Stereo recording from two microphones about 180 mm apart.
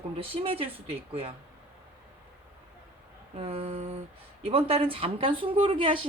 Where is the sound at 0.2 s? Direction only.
30° right (ahead or behind).